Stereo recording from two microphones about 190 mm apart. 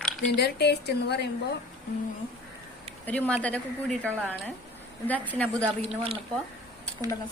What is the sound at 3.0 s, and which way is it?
A woman's voice, 10° left (ahead or behind).